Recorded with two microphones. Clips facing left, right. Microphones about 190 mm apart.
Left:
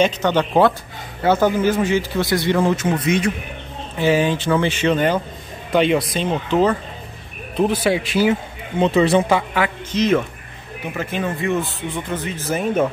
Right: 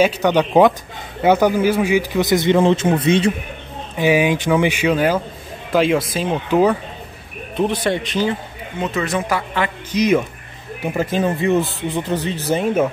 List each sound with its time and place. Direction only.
0.0 s speech: 10° right (ahead or behind); by 3.3 s 30° right (ahead or behind)
4.0 s speech: 10° right (ahead or behind)
7.5 s speech: centre (ahead or behind)
8.7 s speech: 30° left (ahead or behind)
9.8 s speech: 10° right (ahead or behind)
10.9 s speech: 35° right (ahead or behind)